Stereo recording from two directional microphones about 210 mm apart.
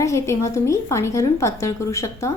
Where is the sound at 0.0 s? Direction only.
15° left (ahead or behind).